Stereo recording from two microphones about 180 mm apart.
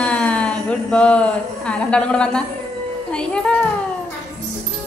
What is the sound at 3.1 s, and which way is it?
Speech, 5° left (ahead or behind).